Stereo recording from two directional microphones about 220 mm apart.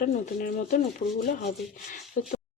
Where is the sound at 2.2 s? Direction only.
35° left (ahead or behind).